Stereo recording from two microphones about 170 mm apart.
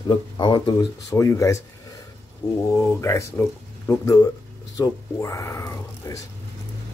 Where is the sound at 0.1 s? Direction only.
25° left (ahead or behind).